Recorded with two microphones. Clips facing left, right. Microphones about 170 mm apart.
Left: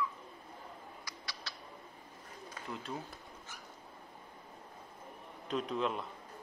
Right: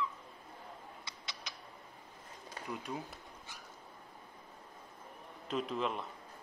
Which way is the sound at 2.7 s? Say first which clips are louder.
Right 1 dB; 15° right (ahead or behind).